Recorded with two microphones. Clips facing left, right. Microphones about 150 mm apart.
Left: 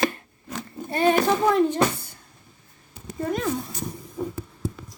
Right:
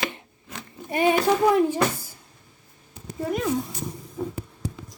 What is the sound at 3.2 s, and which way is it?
Speech, 10° right (ahead or behind).